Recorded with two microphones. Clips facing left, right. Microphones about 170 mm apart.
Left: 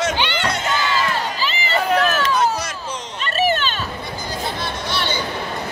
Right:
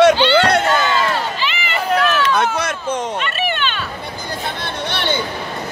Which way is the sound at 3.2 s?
40° left (ahead or behind).